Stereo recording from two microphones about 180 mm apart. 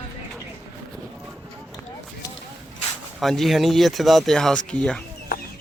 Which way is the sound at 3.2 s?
Centre (ahead or behind).